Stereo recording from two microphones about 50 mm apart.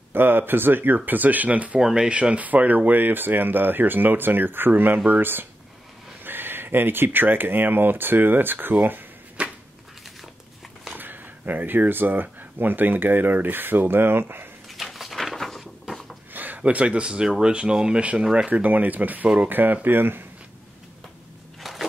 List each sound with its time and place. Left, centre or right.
0.1 s speech: right
1.8 s speech: centre
2.0 s speech: right
9.4 s a sound: right
11.0 s speech: right
14.8 s a sound: centre
16.3 s speech: right; by 18.0 s centre
18.3 s speech: right
19.5 s speech: right
21.7 s a sound: centre